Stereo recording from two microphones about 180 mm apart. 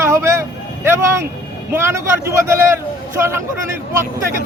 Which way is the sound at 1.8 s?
15° right (ahead or behind).